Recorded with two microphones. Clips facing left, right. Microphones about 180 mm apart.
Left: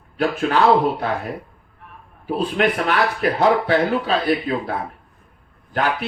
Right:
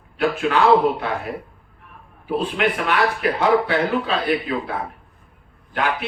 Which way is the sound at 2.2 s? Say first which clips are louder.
Left 2 dB; 40° left (ahead or behind).